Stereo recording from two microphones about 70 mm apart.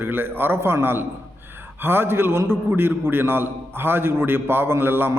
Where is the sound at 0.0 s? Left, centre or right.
Right.